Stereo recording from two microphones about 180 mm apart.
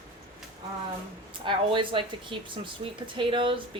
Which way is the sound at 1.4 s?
25° right (ahead or behind).